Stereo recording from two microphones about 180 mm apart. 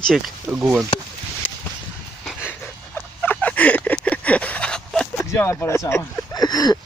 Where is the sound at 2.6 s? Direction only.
10° left (ahead or behind).